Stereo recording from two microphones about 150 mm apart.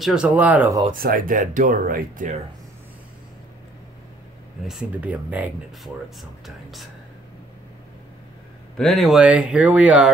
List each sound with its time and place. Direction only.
0.0 s speech: 5° right (ahead or behind)
0.9 s speech: 70° right (ahead or behind)
4.6 s speech: 5° right (ahead or behind)
8.7 s speech: centre (ahead or behind)